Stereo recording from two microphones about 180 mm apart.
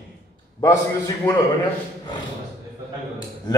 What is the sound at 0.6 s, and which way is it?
Speech, 20° left (ahead or behind).